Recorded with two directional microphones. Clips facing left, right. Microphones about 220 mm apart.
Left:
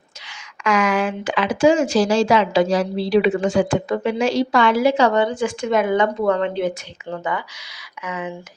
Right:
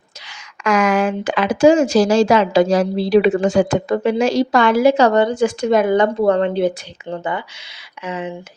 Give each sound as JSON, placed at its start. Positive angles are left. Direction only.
{"t": 0.3, "sound": "speech", "side_deg": -40}